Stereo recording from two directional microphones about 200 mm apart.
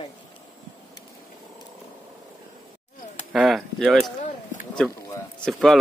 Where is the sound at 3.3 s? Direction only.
Centre (ahead or behind).